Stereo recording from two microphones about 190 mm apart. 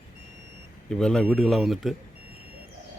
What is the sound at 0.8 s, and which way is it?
A man's voice, 5° left (ahead or behind).